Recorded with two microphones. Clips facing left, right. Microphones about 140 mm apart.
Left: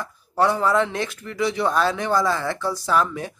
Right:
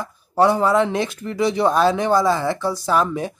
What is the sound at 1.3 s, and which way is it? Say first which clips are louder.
Speech: right 4 dB; 25° right (ahead or behind).